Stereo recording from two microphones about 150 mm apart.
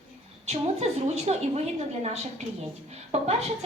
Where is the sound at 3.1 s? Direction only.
45° right (ahead or behind).